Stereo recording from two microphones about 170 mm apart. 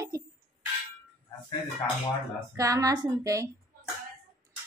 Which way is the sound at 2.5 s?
20° right (ahead or behind).